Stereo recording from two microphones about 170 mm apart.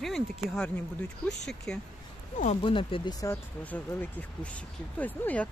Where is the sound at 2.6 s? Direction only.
30° left (ahead or behind).